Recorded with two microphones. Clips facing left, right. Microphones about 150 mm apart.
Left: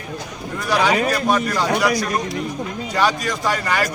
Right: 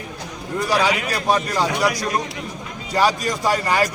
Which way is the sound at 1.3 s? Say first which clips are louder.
Right 3 dB; 35° right (ahead or behind).